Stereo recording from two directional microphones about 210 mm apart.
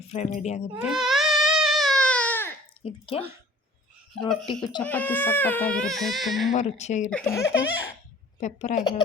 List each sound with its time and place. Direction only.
0.1 s speech: 30° left (ahead or behind)
0.9 s baby cry: centre (ahead or behind)
2.8 s speech: 25° left (ahead or behind)
4.4 s speech: 20° left (ahead or behind)
4.8 s speech: 10° left (ahead or behind)
6.5 s speech: 35° left (ahead or behind)
7.1 s speech: 5° left (ahead or behind)
7.5 s baby laughter: 5° right (ahead or behind)
8.4 s speech: 35° left (ahead or behind)